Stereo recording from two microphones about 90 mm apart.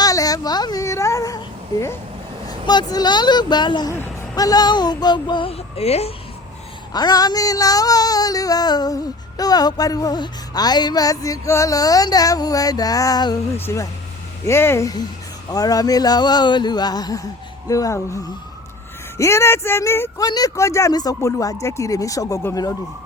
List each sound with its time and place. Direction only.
0.0 s a sound: 45° left (ahead or behind)
2.5 s speech: 50° left (ahead or behind)
4.4 s speech: 45° left (ahead or behind); by 6.1 s 90° left
6.9 s speech: 45° left (ahead or behind)
13.6 s speech: 25° left (ahead or behind)
15.4 s speech: 45° left (ahead or behind)
20.1 s speech: 45° left (ahead or behind)
20.6 s speech: 35° left (ahead or behind)
20.9 s speech: 45° left (ahead or behind)
21.2 s speech: 35° left (ahead or behind)